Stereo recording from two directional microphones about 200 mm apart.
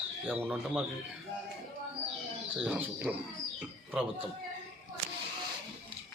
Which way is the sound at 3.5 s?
5° right (ahead or behind).